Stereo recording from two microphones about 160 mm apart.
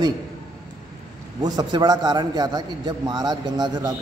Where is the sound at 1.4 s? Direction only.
25° right (ahead or behind).